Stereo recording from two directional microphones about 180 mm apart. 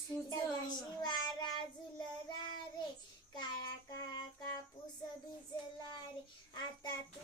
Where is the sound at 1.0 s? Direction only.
25° left (ahead or behind).